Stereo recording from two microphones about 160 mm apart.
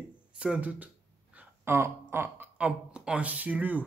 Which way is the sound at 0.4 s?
10° right (ahead or behind).